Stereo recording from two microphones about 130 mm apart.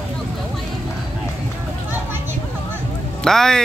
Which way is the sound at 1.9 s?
15° right (ahead or behind).